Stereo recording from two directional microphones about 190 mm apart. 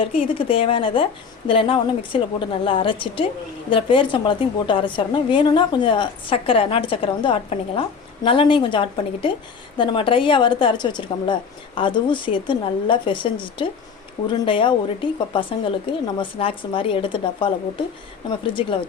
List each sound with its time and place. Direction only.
0.0 s a woman's voice: 30° left (ahead or behind)